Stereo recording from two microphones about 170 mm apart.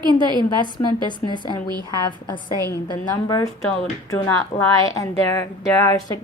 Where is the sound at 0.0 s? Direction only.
25° right (ahead or behind).